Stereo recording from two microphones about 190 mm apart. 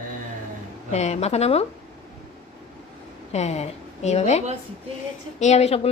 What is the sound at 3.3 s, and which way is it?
A woman's voice, 35° left (ahead or behind).